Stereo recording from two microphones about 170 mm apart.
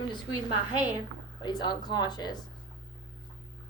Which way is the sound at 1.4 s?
25° left (ahead or behind).